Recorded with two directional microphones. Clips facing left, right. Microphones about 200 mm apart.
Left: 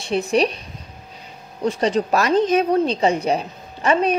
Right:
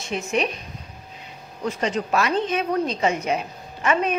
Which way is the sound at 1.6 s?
35° left (ahead or behind).